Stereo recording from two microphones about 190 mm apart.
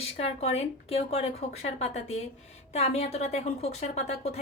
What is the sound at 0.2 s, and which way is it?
Speech, 35° left (ahead or behind).